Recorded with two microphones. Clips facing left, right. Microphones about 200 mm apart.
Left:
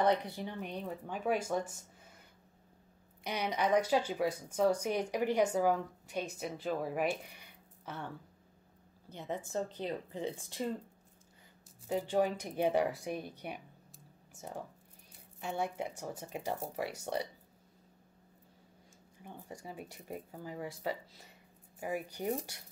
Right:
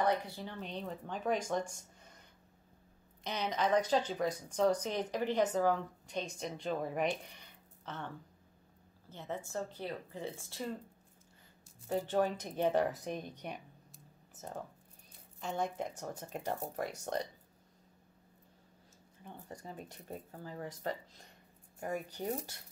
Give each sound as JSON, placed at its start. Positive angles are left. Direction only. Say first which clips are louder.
{"t": 0.0, "sound": "speech", "louder": "left 3 dB", "side_deg": 20}
{"t": 3.3, "sound": "speech", "louder": "left 1 dB", "side_deg": 10}
{"t": 9.1, "sound": "speech", "louder": "left 3 dB", "side_deg": 15}
{"t": 11.9, "sound": "speech", "louder": "left 1 dB", "side_deg": 10}
{"t": 19.2, "sound": "speech", "louder": "left 1 dB", "side_deg": 10}